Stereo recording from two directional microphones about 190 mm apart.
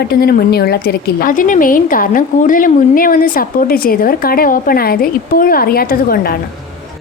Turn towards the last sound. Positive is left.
turn(degrees=50)  # may be behind; listen again after turning